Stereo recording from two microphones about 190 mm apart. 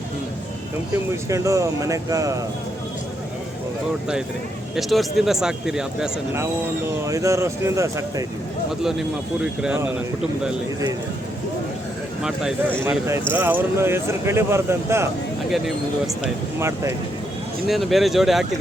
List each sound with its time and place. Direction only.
1.1 s speech: 15° right (ahead or behind)
4.7 s speech: centre (ahead or behind)
7.0 s speech: 15° right (ahead or behind)
8.8 s speech: centre (ahead or behind)
12.2 s speech: 5° right (ahead or behind)
16.2 s speech: 15° right (ahead or behind)
17.7 s speech: centre (ahead or behind)